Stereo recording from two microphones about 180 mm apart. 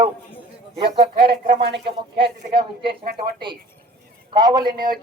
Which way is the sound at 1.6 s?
65° right (ahead or behind).